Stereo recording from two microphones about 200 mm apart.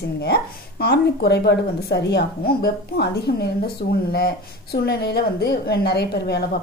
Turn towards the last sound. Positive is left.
turn(degrees=55)  # may be behind; listen again after turning